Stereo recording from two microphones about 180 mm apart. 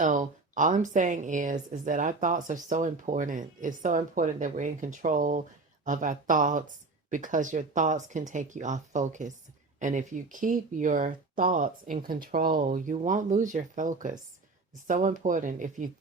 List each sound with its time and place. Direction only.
0.0 s speech: 45° right (ahead or behind)